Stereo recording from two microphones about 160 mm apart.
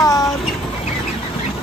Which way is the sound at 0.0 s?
20° left (ahead or behind).